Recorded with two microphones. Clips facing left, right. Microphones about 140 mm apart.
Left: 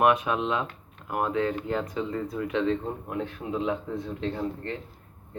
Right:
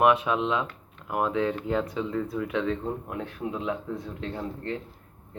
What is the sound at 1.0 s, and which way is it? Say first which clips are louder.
Speech: right 1 dB; 15° right (ahead or behind).